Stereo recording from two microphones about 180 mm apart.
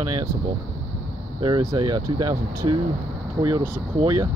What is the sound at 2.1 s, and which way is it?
Speech, 25° right (ahead or behind).